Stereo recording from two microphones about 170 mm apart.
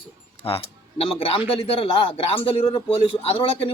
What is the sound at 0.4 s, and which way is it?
A man's voice, 35° left (ahead or behind).